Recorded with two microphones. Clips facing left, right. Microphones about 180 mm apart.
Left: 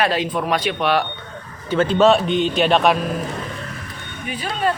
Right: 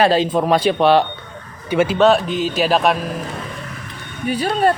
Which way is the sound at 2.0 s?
Centre (ahead or behind).